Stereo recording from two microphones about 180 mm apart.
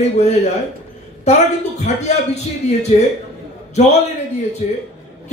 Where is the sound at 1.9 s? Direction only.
40° left (ahead or behind).